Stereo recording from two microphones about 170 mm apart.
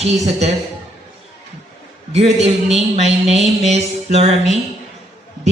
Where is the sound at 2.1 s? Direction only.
40° right (ahead or behind).